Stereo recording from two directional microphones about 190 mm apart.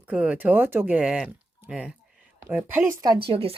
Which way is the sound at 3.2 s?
30° right (ahead or behind).